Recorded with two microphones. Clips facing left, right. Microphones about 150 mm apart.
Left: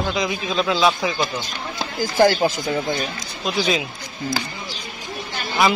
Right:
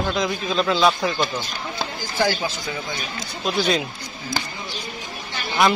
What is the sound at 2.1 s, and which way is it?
Speech, 50° left (ahead or behind).